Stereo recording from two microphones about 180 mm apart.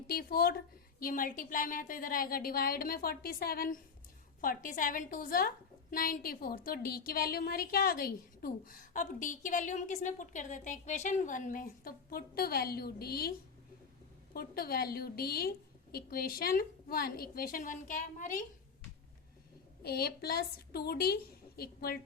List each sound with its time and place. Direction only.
0.1 s a woman's voice: 55° left (ahead or behind)
14.3 s a woman's voice: 55° left (ahead or behind)
19.8 s a woman's voice: 60° left (ahead or behind)